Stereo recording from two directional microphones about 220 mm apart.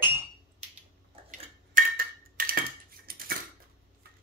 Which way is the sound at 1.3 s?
40° right (ahead or behind).